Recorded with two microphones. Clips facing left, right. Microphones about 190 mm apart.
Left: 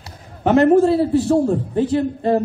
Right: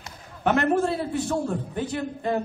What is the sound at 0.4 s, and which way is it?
A man's voice, 30° left (ahead or behind).